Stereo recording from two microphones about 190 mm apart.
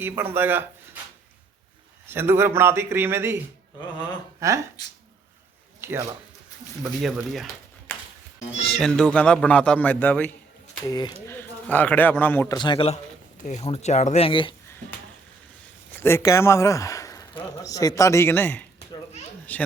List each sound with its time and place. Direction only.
0.0 s a man's voice: 10° right (ahead or behind)
2.0 s a man's voice: 10° right (ahead or behind)
5.8 s speech: 15° right (ahead or behind)
6.8 s a man's voice: centre (ahead or behind)
7.9 s music: 10° left (ahead or behind)
8.6 s a man's voice: centre (ahead or behind)
10.8 s speech: 20° left (ahead or behind)
11.3 s a man's voice: 10° left (ahead or behind)
12.5 s speech: 25° left (ahead or behind)
16.0 s speech: 15° left (ahead or behind)